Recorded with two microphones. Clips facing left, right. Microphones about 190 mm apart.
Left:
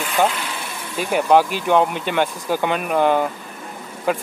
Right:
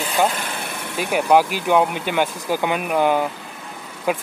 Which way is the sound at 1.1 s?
10° right (ahead or behind).